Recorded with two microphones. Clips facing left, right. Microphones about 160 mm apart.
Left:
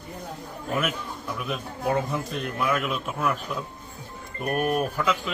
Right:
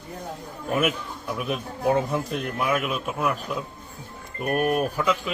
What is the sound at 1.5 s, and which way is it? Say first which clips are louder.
Speech: right 3 dB; 15° right (ahead or behind).